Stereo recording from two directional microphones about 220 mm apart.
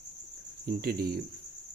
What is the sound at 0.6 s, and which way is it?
Speech, 45° right (ahead or behind).